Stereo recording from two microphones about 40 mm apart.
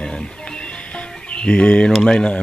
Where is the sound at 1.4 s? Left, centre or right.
Left.